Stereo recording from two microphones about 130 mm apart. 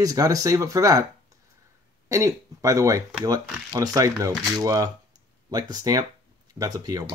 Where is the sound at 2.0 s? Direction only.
25° right (ahead or behind).